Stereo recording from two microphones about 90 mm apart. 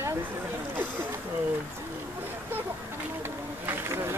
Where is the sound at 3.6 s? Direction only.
30° right (ahead or behind).